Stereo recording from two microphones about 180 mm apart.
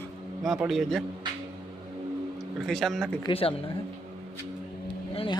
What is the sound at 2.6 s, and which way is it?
Speech, centre (ahead or behind).